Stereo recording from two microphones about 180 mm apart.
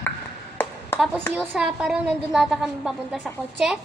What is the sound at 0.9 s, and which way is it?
A woman's voice, 5° right (ahead or behind).